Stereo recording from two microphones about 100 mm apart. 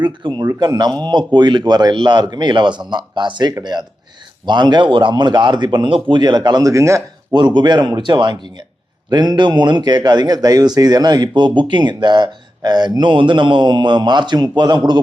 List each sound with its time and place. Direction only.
0.0 s a man's voice: 50° right (ahead or behind); by 7.0 s 30° right (ahead or behind)
7.3 s a man's voice: 50° right (ahead or behind)